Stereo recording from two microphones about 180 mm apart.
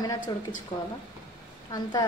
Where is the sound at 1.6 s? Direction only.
20° left (ahead or behind).